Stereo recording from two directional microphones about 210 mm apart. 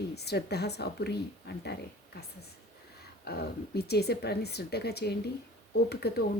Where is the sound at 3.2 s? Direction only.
50° left (ahead or behind).